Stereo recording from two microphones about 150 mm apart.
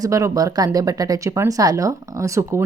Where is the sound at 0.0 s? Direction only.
25° right (ahead or behind).